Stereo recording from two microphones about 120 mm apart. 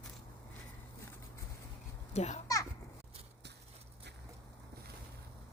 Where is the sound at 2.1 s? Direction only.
70° left (ahead or behind).